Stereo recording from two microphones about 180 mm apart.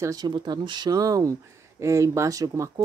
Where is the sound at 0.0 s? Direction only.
20° right (ahead or behind).